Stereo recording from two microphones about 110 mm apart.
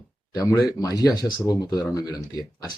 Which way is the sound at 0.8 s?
35° left (ahead or behind).